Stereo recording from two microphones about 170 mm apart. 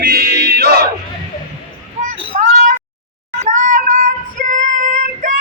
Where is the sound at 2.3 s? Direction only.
45° right (ahead or behind).